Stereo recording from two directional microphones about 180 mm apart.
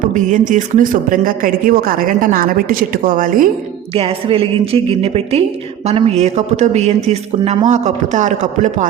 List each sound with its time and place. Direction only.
0.2 s speech: 45° right (ahead or behind)
3.9 s speech: 30° right (ahead or behind)